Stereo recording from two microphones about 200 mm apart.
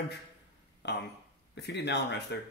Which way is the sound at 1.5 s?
60° left (ahead or behind).